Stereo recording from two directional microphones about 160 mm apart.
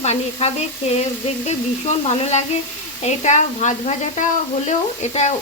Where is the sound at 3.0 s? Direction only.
45° left (ahead or behind).